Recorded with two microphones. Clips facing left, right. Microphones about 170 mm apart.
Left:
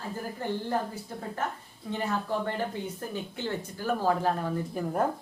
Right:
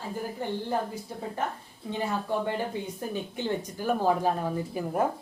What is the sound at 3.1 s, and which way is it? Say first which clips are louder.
A woman's voice: right 4 dB; 15° right (ahead or behind).